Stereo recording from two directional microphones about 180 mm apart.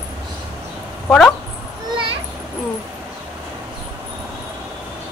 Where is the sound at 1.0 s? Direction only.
5° left (ahead or behind).